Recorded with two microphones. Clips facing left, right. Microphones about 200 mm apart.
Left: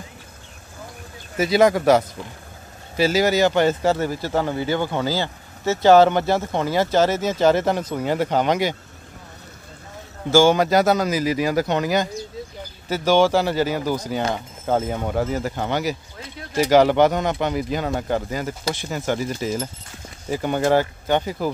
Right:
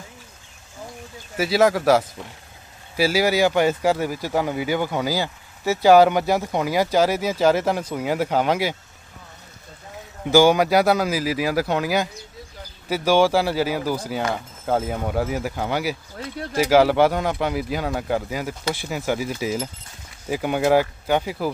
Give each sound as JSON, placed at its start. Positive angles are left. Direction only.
{"t": 1.3, "sound": "speech", "side_deg": -5}
{"t": 10.2, "sound": "speech", "side_deg": -15}